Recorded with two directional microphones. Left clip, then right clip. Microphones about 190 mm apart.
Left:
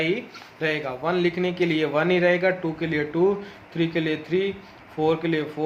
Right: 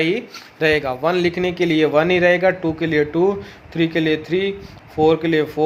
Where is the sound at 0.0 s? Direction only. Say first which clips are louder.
Right 5 dB; 50° right (ahead or behind).